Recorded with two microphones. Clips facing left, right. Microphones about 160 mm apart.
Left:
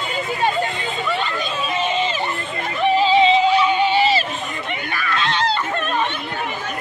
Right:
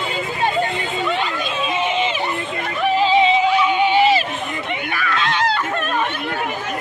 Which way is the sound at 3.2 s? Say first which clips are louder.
Left 1 dB; 10° right (ahead or behind).